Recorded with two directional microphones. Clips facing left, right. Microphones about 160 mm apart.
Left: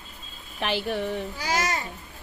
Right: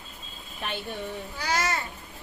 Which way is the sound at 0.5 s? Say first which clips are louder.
Left 7 dB; 85° left.